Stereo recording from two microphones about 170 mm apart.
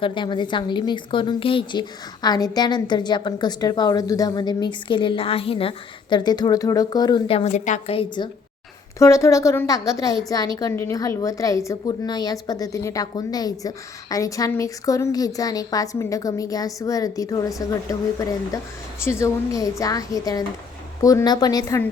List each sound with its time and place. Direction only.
0.0 s a woman's voice: 30° left (ahead or behind); by 7.9 s 45° left (ahead or behind)
7.9 s a woman's voice: 25° left (ahead or behind)